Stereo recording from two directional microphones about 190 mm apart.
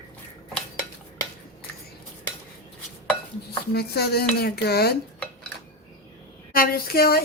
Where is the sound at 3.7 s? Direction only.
55° left (ahead or behind).